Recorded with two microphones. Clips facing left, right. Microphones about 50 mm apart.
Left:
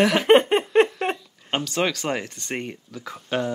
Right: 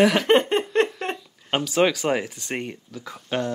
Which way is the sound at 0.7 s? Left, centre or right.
Centre.